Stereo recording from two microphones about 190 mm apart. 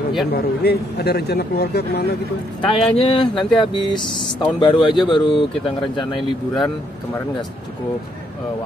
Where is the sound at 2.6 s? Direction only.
30° left (ahead or behind).